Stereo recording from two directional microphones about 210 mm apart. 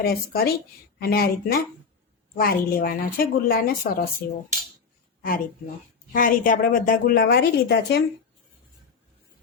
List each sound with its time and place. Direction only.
0.0 s a woman's voice: 45° left (ahead or behind)
6.1 s a woman's voice: 40° left (ahead or behind)